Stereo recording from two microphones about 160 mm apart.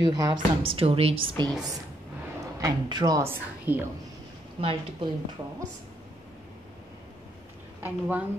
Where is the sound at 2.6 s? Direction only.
25° right (ahead or behind).